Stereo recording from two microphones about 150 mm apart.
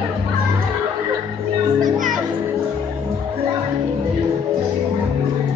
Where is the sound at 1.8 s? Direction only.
60° right (ahead or behind).